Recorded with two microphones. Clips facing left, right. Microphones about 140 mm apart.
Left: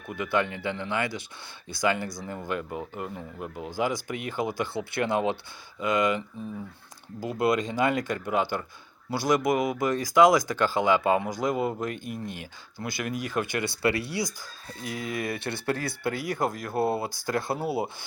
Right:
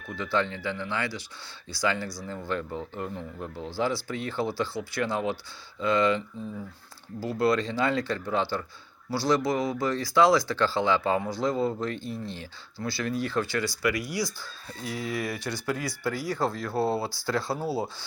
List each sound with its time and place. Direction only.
0.1 s speech: 20° left (ahead or behind)
15.5 s speech: 60° left (ahead or behind)
16.0 s speech: 20° left (ahead or behind)
16.5 s speech: 45° left (ahead or behind)
16.8 s speech: 20° left (ahead or behind)
17.1 s speech: 50° left (ahead or behind)
17.5 s speech: 20° left (ahead or behind)